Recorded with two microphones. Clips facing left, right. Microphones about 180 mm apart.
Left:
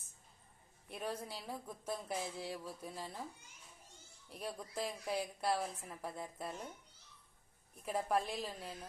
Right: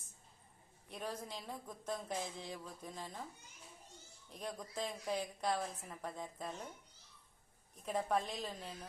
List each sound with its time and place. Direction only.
0.9 s a woman's voice: 5° left (ahead or behind)
4.3 s a woman's voice: 10° left (ahead or behind)
7.9 s a woman's voice: 5° left (ahead or behind)